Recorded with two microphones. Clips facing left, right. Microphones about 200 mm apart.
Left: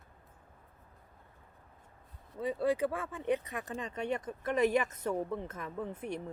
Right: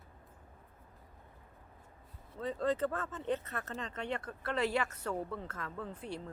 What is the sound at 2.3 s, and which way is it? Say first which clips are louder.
Speech: left 3 dB; 10° left (ahead or behind).